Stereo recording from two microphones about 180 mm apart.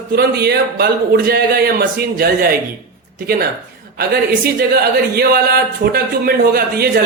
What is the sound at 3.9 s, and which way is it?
A man's voice, 60° right (ahead or behind).